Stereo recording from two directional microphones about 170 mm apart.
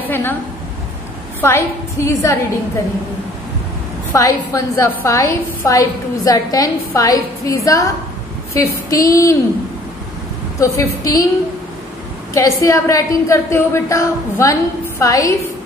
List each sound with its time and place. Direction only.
0.0 s a woman's voice: 10° left (ahead or behind)
1.4 s a woman's voice: 15° left (ahead or behind)
4.1 s a woman's voice: 20° left (ahead or behind)
10.6 s a woman's voice: 20° left (ahead or behind)
12.4 s a woman's voice: 20° left (ahead or behind)